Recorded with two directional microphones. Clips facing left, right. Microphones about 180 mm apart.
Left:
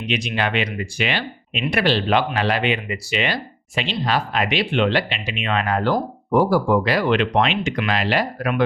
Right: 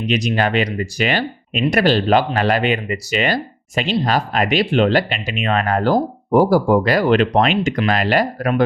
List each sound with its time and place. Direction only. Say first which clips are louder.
0.1 s speech: right 4 dB; 40° right (ahead or behind)